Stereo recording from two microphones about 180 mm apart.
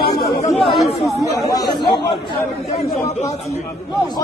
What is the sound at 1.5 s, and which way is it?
Speech, 25° left (ahead or behind).